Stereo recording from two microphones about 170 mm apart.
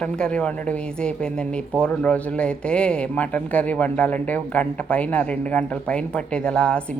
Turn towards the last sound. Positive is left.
turn(degrees=5)  # may be behind; listen again after turning